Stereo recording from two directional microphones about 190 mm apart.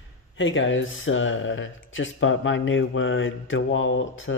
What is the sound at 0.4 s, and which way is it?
Speech, 85° left.